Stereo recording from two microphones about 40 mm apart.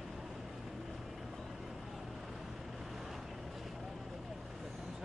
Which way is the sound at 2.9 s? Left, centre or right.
Centre.